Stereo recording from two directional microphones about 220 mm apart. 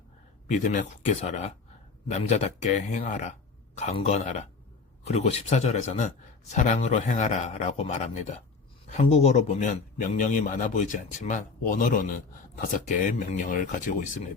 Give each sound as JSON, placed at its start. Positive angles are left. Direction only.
{"t": 0.4, "sound": "a man's voice", "side_deg": 35}